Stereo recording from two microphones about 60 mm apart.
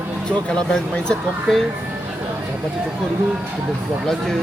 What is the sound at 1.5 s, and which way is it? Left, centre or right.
Speech, centre.